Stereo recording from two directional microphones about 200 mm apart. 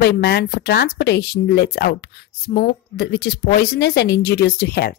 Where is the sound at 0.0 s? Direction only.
55° left (ahead or behind).